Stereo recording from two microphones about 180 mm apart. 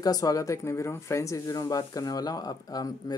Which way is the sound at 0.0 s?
20° left (ahead or behind).